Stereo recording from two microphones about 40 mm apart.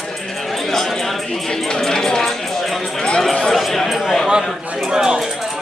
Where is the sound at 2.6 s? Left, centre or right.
Centre.